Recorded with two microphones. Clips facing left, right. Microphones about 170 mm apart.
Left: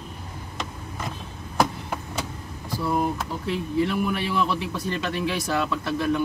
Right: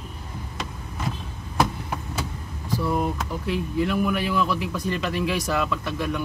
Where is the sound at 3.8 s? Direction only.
30° left (ahead or behind).